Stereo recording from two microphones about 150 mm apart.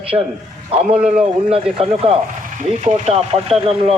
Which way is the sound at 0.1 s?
30° right (ahead or behind).